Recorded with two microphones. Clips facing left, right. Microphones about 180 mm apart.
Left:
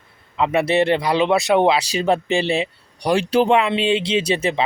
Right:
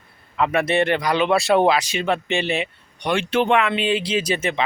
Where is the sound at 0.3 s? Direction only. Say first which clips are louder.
Left 2 dB; 25° left (ahead or behind).